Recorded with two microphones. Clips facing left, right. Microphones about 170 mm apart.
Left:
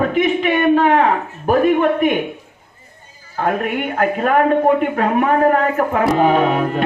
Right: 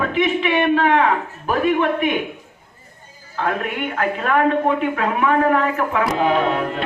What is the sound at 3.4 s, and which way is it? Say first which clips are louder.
Speech: left 4 dB; 45° left (ahead or behind).